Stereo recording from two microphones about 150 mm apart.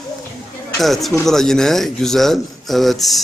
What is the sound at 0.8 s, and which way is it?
A man's voice, centre (ahead or behind).